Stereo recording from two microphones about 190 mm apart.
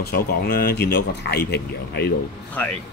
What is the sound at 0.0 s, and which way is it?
Speech, 55° left (ahead or behind).